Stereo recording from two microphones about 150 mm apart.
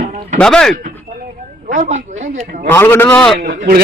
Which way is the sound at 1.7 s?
55° right (ahead or behind).